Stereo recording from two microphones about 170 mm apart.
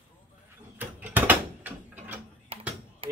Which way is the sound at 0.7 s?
10° right (ahead or behind).